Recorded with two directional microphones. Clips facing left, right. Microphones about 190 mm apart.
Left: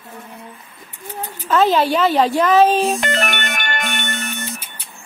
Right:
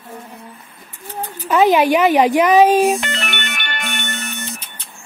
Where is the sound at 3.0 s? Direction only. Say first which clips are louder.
Left 4 dB; 45° left (ahead or behind).